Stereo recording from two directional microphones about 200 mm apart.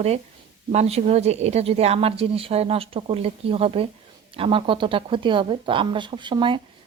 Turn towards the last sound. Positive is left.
turn(degrees=-25)  # may be behind; listen again after turning